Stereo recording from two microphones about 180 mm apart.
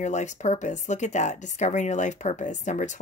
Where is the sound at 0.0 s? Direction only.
40° left (ahead or behind).